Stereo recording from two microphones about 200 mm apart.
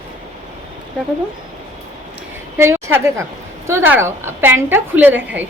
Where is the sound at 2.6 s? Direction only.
10° right (ahead or behind).